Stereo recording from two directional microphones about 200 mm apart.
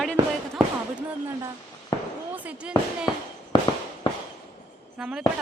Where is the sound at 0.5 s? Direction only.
5° right (ahead or behind).